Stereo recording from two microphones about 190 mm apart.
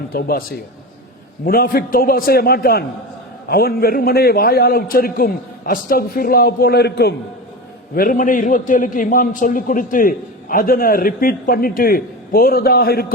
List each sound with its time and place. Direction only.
0.1 s a man's voice: 50° left (ahead or behind)